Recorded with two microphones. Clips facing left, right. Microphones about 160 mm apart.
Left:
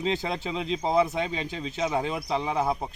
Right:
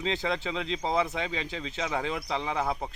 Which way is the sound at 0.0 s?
15° left (ahead or behind).